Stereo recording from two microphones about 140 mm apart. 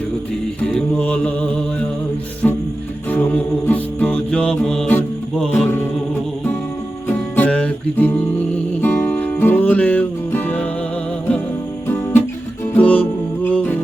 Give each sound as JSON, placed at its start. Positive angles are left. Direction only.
{"t": 0.9, "sound": "mantra", "side_deg": 10}
{"t": 2.4, "sound": "music", "side_deg": 10}
{"t": 7.1, "sound": "music", "side_deg": 10}
{"t": 11.9, "sound": "music", "side_deg": 15}